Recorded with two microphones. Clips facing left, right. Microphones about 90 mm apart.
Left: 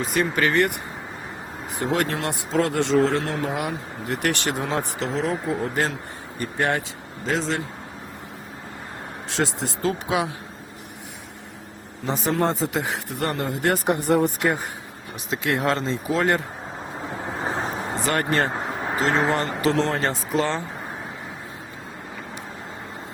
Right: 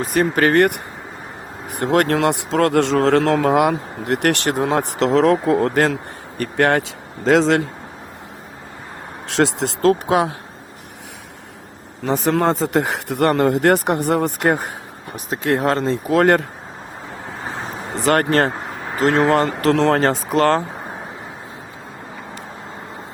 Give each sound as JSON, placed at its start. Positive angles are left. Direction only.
{"t": 0.0, "sound": "speech", "side_deg": -40}
{"t": 7.3, "sound": "a man's voice", "side_deg": -90}
{"t": 9.3, "sound": "speech", "side_deg": -70}
{"t": 12.0, "sound": "speech", "side_deg": -65}
{"t": 15.1, "sound": "speech", "side_deg": -40}
{"t": 17.4, "sound": "vehicle", "side_deg": 10}
{"t": 18.0, "sound": "speech", "side_deg": -60}
{"t": 19.7, "sound": "speech", "side_deg": -85}